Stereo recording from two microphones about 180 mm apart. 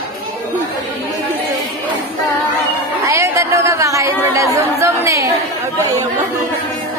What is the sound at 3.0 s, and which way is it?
Speech, 15° right (ahead or behind).